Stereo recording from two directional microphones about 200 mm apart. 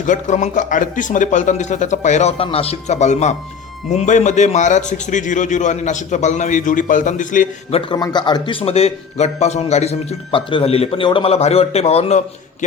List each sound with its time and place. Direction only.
0.0 s a man's voice: 40° left (ahead or behind)
7.8 s a man's voice: 20° left (ahead or behind)